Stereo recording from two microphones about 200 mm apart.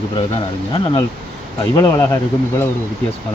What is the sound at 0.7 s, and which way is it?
Speech, 25° left (ahead or behind).